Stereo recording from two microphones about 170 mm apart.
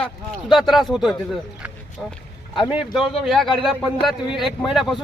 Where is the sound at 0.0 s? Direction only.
Centre (ahead or behind).